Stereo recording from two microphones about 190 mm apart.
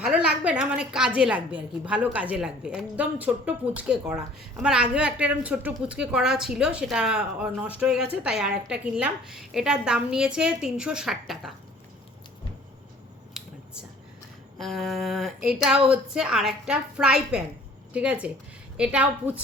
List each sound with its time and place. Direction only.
0.0 s a woman's voice: 5° right (ahead or behind)
13.4 s a sound: centre (ahead or behind)
14.6 s a woman's voice: centre (ahead or behind)